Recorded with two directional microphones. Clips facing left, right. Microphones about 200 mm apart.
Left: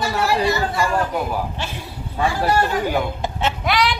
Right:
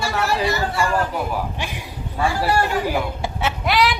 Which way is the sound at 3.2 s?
10° right (ahead or behind).